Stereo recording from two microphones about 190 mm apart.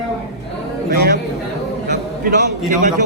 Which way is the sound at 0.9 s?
50° right (ahead or behind).